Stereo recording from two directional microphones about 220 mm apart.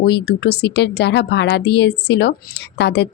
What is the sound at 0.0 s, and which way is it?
A woman's voice, 45° left (ahead or behind).